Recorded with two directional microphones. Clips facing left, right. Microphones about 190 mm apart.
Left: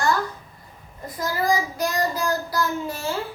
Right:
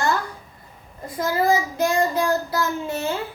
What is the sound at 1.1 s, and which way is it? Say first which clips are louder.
Child singing: right 3 dB; 25° right (ahead or behind).